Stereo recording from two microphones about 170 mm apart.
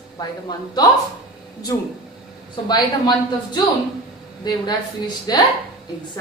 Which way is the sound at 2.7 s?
25° left (ahead or behind).